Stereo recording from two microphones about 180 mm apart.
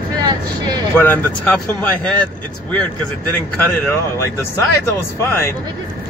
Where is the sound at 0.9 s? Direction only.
10° left (ahead or behind).